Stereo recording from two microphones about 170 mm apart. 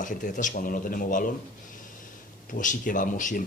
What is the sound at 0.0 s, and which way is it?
Speech, 50° left (ahead or behind).